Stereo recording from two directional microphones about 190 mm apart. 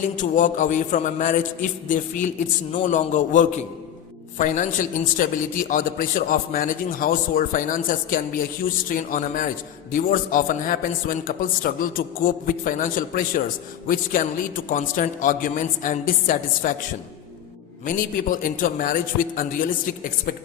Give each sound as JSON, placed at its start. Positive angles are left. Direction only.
{"t": 0.2, "sound": "a man's voice", "side_deg": 45}
{"t": 17.8, "sound": "a man's voice", "side_deg": 45}